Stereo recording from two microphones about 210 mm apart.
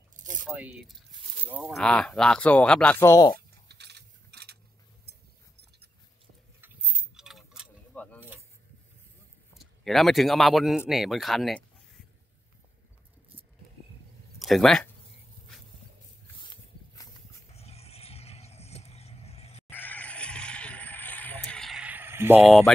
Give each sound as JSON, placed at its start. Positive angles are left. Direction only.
{"t": 0.5, "sound": "speech", "side_deg": -5}
{"t": 3.6, "sound": "coin", "side_deg": -50}
{"t": 6.8, "sound": "keys jangling", "side_deg": 10}
{"t": 7.2, "sound": "keys jangling", "side_deg": 0}
{"t": 9.6, "sound": "speech", "side_deg": 0}
{"t": 14.4, "sound": "speech", "side_deg": 0}
{"t": 16.4, "sound": "a sound", "side_deg": 15}
{"t": 17.6, "sound": "vehicle", "side_deg": 30}
{"t": 19.7, "sound": "vehicle", "side_deg": 10}